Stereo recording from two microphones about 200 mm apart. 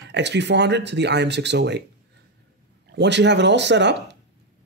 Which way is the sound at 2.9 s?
60° right (ahead or behind).